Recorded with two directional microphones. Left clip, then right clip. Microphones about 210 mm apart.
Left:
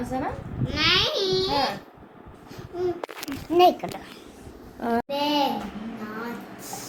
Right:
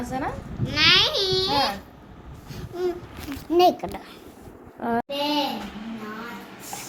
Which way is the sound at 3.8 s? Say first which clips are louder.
Right 1 dB; 25° right (ahead or behind).